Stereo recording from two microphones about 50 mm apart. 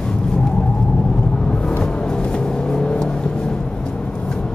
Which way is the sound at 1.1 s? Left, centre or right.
Centre.